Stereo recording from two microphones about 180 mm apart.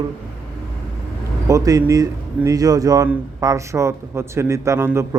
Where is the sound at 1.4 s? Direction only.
20° right (ahead or behind).